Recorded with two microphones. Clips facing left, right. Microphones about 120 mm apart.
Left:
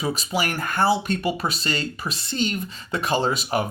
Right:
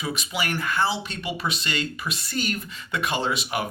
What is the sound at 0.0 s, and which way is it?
Speech, 35° left (ahead or behind).